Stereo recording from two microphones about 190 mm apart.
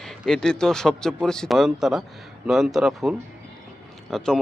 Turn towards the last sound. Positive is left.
turn(degrees=0)  # may be behind; listen again after turning